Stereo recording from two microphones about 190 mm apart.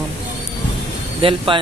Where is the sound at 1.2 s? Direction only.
25° right (ahead or behind).